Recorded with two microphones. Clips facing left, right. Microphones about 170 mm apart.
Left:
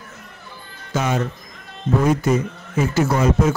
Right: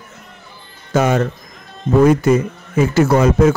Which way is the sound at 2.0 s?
70° right (ahead or behind).